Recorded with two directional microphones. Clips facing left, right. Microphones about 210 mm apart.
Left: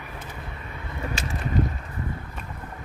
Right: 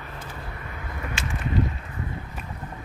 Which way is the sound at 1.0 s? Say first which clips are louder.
Left 2 dB; 35° left (ahead or behind).